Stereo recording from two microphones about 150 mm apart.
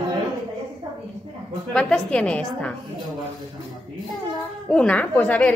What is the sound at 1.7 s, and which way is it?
Speech, 5° left (ahead or behind).